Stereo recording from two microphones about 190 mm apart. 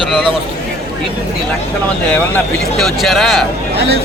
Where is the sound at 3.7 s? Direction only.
60° right (ahead or behind).